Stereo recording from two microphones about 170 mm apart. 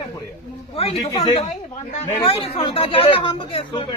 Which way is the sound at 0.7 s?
35° left (ahead or behind).